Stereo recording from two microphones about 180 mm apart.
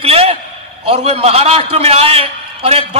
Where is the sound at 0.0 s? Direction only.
35° right (ahead or behind).